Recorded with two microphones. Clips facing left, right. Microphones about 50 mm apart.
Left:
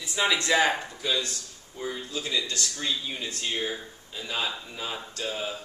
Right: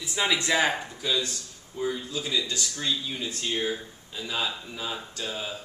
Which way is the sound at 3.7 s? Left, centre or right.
Centre.